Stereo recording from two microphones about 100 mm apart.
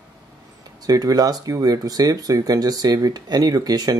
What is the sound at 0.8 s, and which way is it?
Speech, 40° right (ahead or behind).